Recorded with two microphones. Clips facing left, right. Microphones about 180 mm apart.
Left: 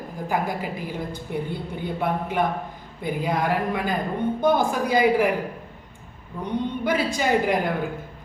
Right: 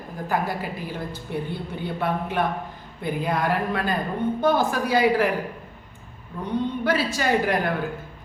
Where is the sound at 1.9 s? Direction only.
15° left (ahead or behind).